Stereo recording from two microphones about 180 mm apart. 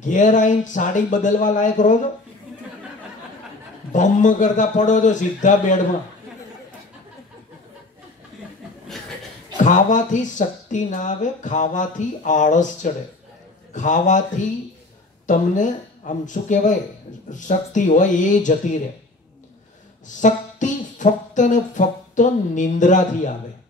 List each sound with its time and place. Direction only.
0.0 s speech: 45° left (ahead or behind)
3.9 s speech: 45° left (ahead or behind)
9.6 s speech: 45° left (ahead or behind)
15.2 s speech: 45° left (ahead or behind)
20.1 s speech: 45° left (ahead or behind)